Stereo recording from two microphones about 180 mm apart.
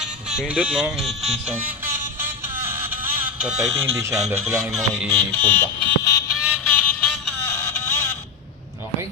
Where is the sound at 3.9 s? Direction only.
15° right (ahead or behind).